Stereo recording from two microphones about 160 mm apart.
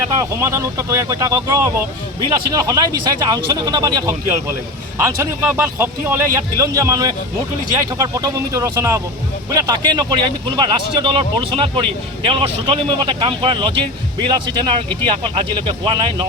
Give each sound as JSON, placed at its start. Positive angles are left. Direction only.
{"t": 0.2, "sound": "a man's voice", "side_deg": -20}